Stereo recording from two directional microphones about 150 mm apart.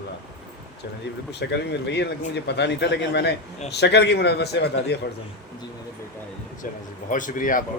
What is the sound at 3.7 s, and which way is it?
Speech, 90° left.